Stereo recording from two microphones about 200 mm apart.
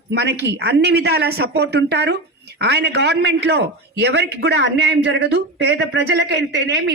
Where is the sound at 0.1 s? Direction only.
55° right (ahead or behind).